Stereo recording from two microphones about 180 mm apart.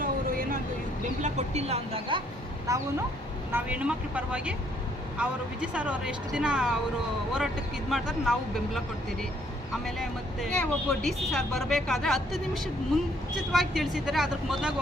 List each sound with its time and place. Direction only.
0.0 s a sound: 50° right (ahead or behind)
1.2 s speech: 40° right (ahead or behind)
2.7 s speech: 20° right (ahead or behind)
3.5 s speech: 5° right (ahead or behind)